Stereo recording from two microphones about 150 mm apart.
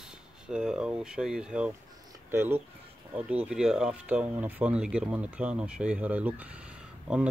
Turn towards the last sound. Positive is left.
turn(degrees=-5)  # may be behind; listen again after turning